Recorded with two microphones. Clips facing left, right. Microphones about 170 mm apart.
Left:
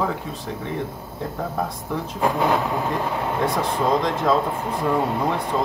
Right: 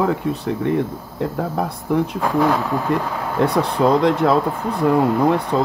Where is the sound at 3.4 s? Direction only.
65° right (ahead or behind).